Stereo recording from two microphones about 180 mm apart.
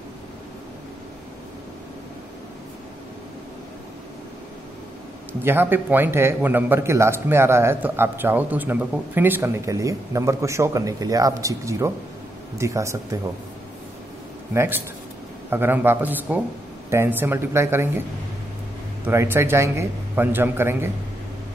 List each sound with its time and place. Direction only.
5.4 s a man's voice: 10° right (ahead or behind)
14.5 s a man's voice: 15° right (ahead or behind)
19.0 s a man's voice: 10° right (ahead or behind)